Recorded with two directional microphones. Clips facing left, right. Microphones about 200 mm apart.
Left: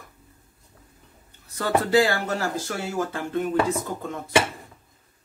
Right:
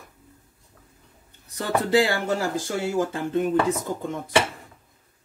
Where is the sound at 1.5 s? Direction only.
20° right (ahead or behind).